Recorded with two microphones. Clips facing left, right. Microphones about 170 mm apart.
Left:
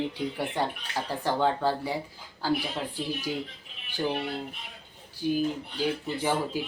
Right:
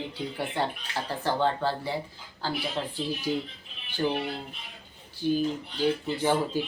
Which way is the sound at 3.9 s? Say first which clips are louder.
Right 2 dB; 15° left (ahead or behind).